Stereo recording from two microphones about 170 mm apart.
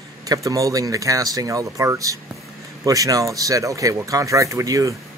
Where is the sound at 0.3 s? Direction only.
20° right (ahead or behind).